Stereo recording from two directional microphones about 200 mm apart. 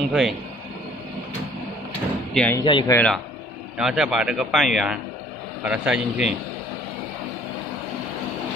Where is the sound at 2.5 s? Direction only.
20° left (ahead or behind).